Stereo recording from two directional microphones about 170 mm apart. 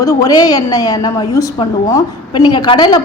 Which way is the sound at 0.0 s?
20° left (ahead or behind).